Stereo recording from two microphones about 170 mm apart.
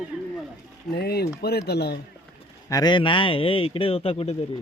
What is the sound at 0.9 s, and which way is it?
Speech, 65° left (ahead or behind).